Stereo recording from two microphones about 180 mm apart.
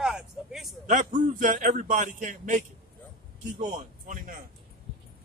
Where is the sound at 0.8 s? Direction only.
45° right (ahead or behind).